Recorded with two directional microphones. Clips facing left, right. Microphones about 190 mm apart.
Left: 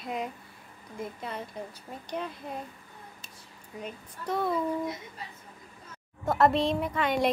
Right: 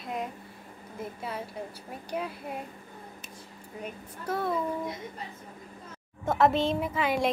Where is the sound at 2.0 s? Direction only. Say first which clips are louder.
Right 1 dB; 10° right (ahead or behind).